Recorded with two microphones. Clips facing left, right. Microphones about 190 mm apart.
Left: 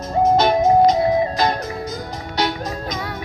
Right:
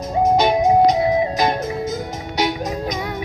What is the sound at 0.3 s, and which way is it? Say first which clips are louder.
Music: even; 15° right (ahead or behind).